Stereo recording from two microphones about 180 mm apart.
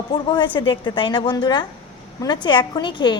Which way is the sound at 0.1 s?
25° left (ahead or behind).